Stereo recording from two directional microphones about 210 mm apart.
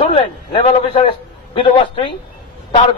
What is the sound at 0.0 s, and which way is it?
A man's voice, 25° left (ahead or behind).